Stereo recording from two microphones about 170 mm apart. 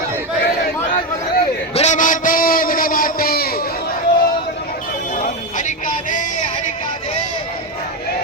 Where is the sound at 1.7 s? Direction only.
45° left (ahead or behind).